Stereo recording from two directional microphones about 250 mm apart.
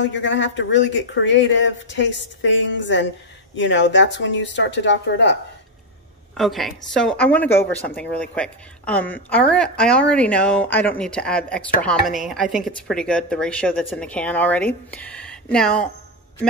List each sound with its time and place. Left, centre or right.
0.0 s speech: left
6.3 s a woman's voice: centre